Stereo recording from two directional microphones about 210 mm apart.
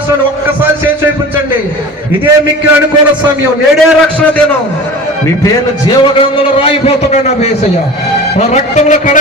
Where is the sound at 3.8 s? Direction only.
Centre (ahead or behind).